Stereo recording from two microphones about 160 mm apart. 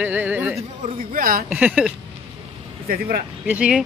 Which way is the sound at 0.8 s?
60° right (ahead or behind).